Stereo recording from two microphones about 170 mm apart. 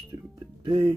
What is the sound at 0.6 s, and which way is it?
Speech, 30° right (ahead or behind).